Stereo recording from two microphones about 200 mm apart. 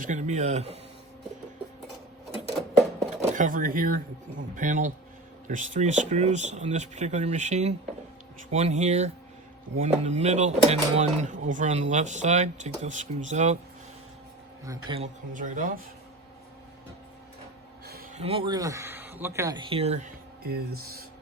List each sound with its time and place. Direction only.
0.0 s speech: 35° right (ahead or behind)
3.2 s speech: 40° right (ahead or behind)
14.8 s speech: 30° right (ahead or behind)
18.1 s speech: 30° right (ahead or behind)
20.4 s speech: 50° right (ahead or behind)